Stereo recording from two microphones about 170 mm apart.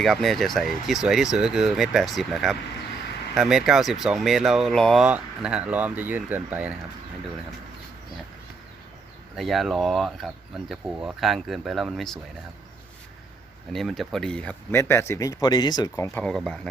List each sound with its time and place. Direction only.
0.0 s speech: centre (ahead or behind)
9.3 s speech: centre (ahead or behind)
13.7 s speech: centre (ahead or behind); by 16.2 s 20° left (ahead or behind)
16.2 s speech: 5° left (ahead or behind)